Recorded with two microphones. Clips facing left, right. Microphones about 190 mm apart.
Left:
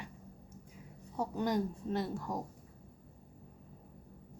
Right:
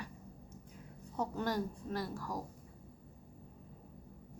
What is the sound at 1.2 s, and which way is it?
Speech, 15° left (ahead or behind).